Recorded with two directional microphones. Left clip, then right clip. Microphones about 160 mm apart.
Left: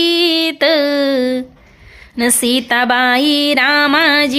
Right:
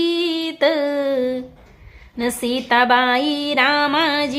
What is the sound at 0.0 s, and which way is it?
Music, 20° left (ahead or behind).